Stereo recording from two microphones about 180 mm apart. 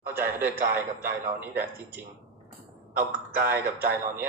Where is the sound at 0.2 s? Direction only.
10° right (ahead or behind).